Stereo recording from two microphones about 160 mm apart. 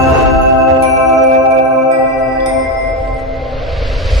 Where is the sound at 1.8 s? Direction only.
Centre (ahead or behind).